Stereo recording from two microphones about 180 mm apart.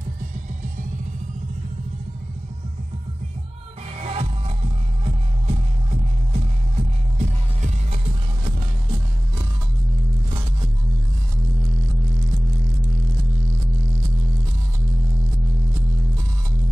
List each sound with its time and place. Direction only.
4.0 s music: 35° right (ahead or behind)